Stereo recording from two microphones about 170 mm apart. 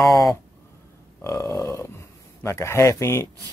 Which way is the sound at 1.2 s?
15° left (ahead or behind).